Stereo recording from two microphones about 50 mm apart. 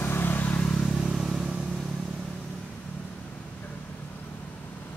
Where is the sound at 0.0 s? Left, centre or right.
Left.